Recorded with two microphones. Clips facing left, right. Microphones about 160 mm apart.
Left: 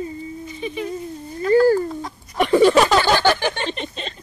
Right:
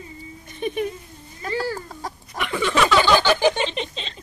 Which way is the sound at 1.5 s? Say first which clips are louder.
Left 12 dB; 45° left (ahead or behind).